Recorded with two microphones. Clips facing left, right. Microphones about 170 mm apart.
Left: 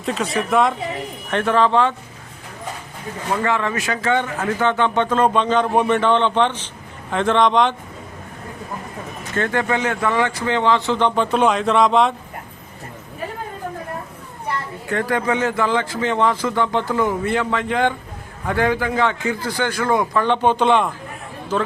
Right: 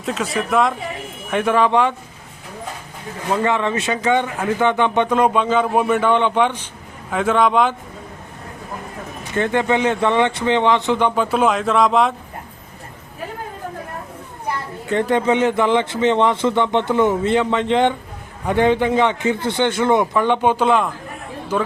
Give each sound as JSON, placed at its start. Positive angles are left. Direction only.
{"t": 0.0, "sound": "speech", "side_deg": 0}
{"t": 1.3, "sound": "speech", "side_deg": -10}
{"t": 3.4, "sound": "speech", "side_deg": -20}
{"t": 9.3, "sound": "speech", "side_deg": -20}
{"t": 14.8, "sound": "speech", "side_deg": -20}